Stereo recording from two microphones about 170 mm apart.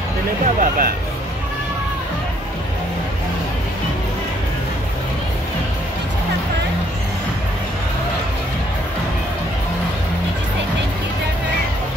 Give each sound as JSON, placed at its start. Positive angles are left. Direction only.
{"t": 0.6, "sound": "speech", "side_deg": -55}